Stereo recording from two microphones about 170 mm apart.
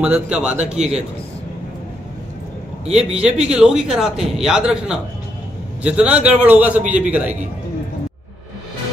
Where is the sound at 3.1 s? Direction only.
5° right (ahead or behind).